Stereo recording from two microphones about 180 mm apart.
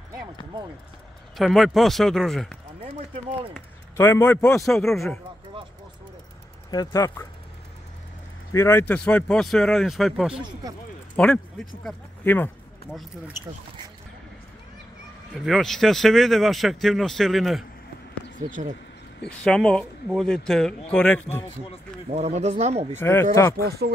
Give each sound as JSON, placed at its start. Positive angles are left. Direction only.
{"t": 1.4, "sound": "speech", "side_deg": 0}
{"t": 3.9, "sound": "speech", "side_deg": 15}
{"t": 6.7, "sound": "speech", "side_deg": 20}
{"t": 8.5, "sound": "speech", "side_deg": 15}
{"t": 15.3, "sound": "speech", "side_deg": 0}
{"t": 18.5, "sound": "speech", "side_deg": -45}
{"t": 19.2, "sound": "speech", "side_deg": 5}
{"t": 22.1, "sound": "speech", "side_deg": -40}
{"t": 22.9, "sound": "speech", "side_deg": 15}
{"t": 23.5, "sound": "speech", "side_deg": -60}